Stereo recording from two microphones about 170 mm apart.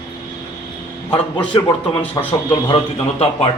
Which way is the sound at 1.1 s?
30° left (ahead or behind).